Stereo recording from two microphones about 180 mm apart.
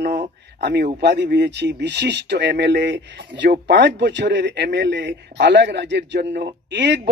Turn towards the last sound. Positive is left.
turn(degrees=-75)  # may be behind; listen again after turning